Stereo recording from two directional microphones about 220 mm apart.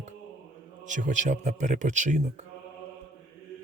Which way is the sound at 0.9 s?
35° right (ahead or behind).